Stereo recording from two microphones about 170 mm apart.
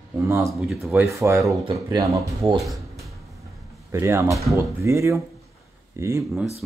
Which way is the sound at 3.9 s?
15° right (ahead or behind).